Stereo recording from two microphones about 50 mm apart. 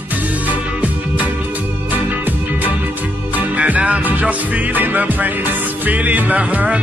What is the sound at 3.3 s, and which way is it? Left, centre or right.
Music, right.